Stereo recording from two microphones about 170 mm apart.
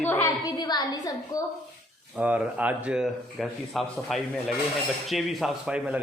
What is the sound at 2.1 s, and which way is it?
A woman's voice, 10° right (ahead or behind).